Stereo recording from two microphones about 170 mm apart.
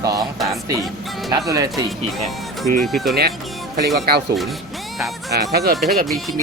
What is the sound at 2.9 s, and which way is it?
Music, centre (ahead or behind).